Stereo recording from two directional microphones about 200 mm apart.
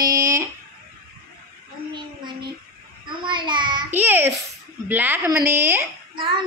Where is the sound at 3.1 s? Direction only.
25° right (ahead or behind).